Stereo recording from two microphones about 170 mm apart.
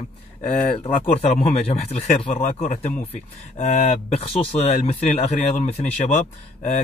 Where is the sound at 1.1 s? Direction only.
40° left (ahead or behind).